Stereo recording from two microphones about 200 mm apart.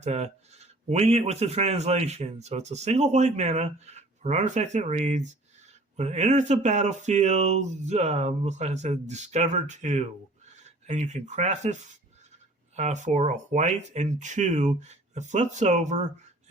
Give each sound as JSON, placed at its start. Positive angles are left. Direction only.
{"t": 0.0, "sound": "speech", "side_deg": -35}